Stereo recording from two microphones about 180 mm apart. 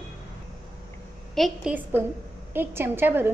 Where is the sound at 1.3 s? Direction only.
Centre (ahead or behind).